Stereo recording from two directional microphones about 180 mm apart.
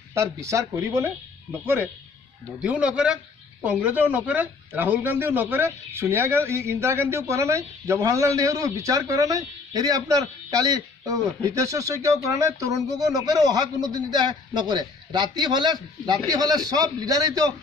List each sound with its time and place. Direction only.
0.1 s speech: 15° right (ahead or behind)
2.6 s a man's voice: 5° right (ahead or behind)